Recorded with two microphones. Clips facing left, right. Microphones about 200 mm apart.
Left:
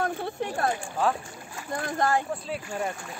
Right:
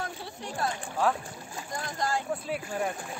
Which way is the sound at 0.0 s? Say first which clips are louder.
Left 9 dB; 55° left (ahead or behind).